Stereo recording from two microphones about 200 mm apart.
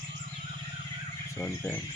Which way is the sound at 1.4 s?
10° left (ahead or behind).